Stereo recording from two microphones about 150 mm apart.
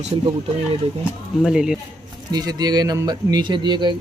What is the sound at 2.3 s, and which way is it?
Speech, 25° right (ahead or behind).